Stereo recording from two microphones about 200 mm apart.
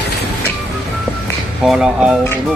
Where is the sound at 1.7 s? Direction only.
5° right (ahead or behind).